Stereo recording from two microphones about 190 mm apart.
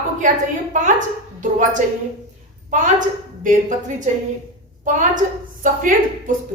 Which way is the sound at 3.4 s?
45° right (ahead or behind).